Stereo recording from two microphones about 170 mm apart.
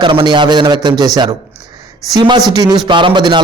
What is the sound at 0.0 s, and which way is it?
A man's voice, 30° right (ahead or behind).